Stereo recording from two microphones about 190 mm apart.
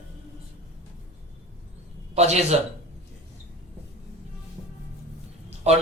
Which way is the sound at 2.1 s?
35° right (ahead or behind).